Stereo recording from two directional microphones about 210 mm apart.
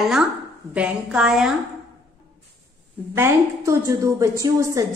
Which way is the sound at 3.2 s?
15° right (ahead or behind).